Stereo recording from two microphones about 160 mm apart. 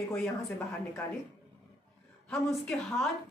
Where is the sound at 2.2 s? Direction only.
Centre (ahead or behind).